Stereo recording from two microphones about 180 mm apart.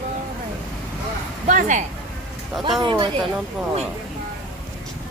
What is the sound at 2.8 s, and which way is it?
Speech, 25° right (ahead or behind).